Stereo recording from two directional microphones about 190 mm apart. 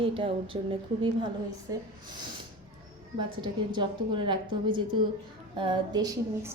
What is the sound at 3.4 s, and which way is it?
A woman's voice, 25° right (ahead or behind).